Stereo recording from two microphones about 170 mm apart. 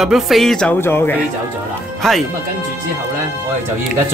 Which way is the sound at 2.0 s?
Centre (ahead or behind).